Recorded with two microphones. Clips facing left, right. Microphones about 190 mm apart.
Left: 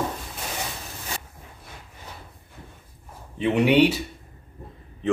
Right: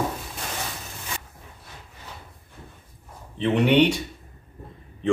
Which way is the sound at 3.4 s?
10° left (ahead or behind).